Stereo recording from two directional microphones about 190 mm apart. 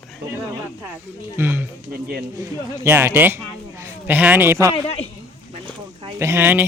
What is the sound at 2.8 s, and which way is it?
A man's voice, 10° right (ahead or behind).